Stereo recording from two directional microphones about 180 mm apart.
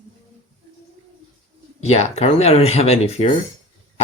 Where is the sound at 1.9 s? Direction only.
35° left (ahead or behind).